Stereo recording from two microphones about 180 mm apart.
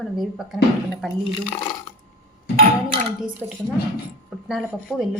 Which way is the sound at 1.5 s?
25° left (ahead or behind).